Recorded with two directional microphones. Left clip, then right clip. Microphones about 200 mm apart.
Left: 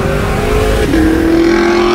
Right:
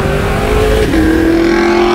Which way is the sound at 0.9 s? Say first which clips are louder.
Even; 25° left (ahead or behind).